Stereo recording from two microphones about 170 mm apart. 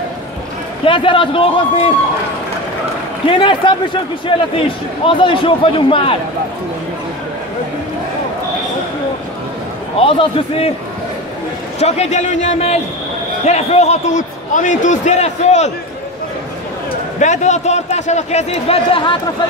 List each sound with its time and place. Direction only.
0.8 s a man's voice: 30° left (ahead or behind)
3.3 s a man's voice: 30° left (ahead or behind)
10.0 s a man's voice: 30° left (ahead or behind)
11.8 s a man's voice: 40° left (ahead or behind)
17.2 s a man's voice: 45° left (ahead or behind)